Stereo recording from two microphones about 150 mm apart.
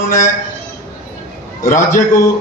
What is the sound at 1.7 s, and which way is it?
Speech, 55° left (ahead or behind).